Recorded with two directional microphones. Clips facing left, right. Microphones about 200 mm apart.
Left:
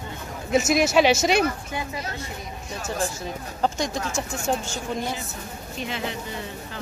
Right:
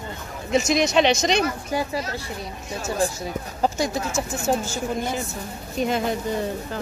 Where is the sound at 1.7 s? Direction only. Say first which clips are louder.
Right 5 dB; 35° right (ahead or behind).